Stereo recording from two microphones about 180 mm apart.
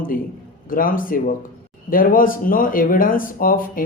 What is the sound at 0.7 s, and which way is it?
Speech, 50° left (ahead or behind).